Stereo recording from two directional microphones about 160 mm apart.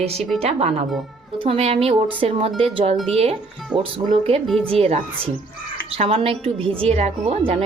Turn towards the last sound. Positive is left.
turn(degrees=-40)  # may be behind; listen again after turning